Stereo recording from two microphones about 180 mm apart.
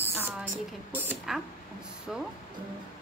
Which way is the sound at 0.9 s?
5° right (ahead or behind).